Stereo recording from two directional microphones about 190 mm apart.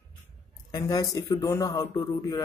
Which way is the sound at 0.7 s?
20° left (ahead or behind).